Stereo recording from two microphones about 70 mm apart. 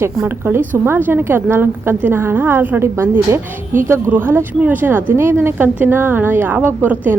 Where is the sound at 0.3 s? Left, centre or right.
Right.